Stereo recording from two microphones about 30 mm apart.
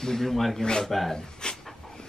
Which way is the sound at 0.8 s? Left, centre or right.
Centre.